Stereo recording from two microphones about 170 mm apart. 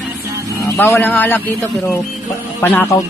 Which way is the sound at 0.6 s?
15° left (ahead or behind).